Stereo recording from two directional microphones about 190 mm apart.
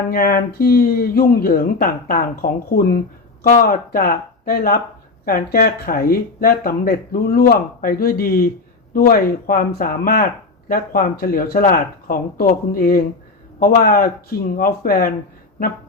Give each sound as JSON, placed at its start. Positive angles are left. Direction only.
{"t": 0.1, "sound": "speech", "side_deg": 50}